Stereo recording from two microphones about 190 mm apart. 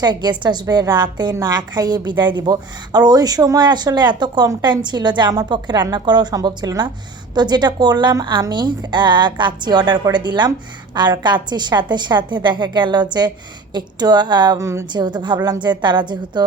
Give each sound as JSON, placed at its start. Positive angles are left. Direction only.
{"t": 0.0, "sound": "a woman's voice", "side_deg": -20}